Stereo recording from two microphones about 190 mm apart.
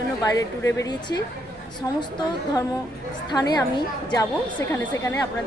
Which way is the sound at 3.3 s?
20° left (ahead or behind).